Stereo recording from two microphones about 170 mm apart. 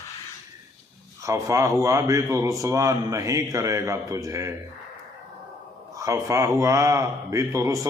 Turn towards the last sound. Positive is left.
turn(degrees=-20)  # may be behind; listen again after turning